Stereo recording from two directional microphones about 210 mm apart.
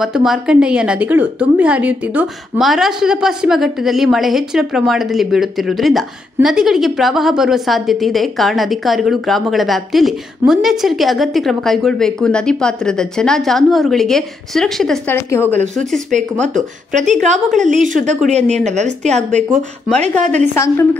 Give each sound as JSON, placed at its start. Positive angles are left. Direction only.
{"t": 0.0, "sound": "a woman's voice", "side_deg": 0}
{"t": 16.1, "sound": "speech", "side_deg": -35}
{"t": 17.5, "sound": "a woman's voice", "side_deg": 0}
{"t": 17.7, "sound": "speech", "side_deg": -35}
{"t": 20.5, "sound": "a woman's voice", "side_deg": 10}